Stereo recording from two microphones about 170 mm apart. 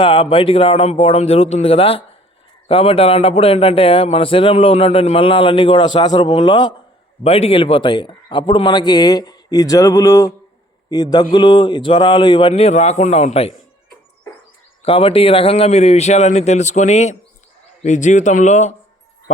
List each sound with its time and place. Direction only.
0.0 s a man's voice: 30° left (ahead or behind)
14.8 s speech: 35° left (ahead or behind)